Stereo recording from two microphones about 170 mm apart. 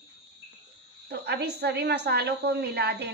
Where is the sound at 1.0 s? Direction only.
75° right (ahead or behind).